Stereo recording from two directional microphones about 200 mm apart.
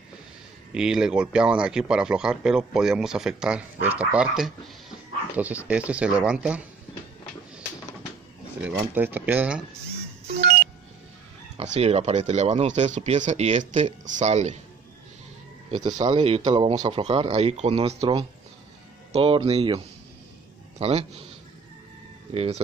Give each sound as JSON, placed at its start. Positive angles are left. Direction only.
{"t": 0.7, "sound": "speech", "side_deg": -5}
{"t": 8.5, "sound": "speech", "side_deg": -10}
{"t": 10.4, "sound": "vehicle", "side_deg": -50}
{"t": 11.5, "sound": "speech", "side_deg": -30}
{"t": 15.8, "sound": "speech", "side_deg": -20}
{"t": 20.8, "sound": "speech", "side_deg": -30}
{"t": 22.3, "sound": "speech", "side_deg": -30}